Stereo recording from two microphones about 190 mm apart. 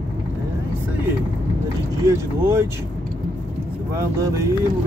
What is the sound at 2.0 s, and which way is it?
Speech, 15° right (ahead or behind).